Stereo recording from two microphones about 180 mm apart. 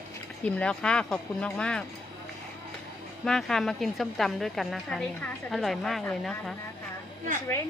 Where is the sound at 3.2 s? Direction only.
5° left (ahead or behind).